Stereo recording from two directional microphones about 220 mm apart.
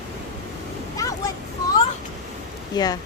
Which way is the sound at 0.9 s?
15° left (ahead or behind).